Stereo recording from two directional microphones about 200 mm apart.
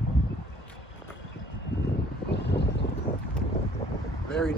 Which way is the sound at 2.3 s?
60° left (ahead or behind).